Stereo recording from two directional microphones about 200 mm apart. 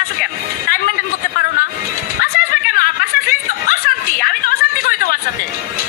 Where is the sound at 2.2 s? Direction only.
45° left (ahead or behind).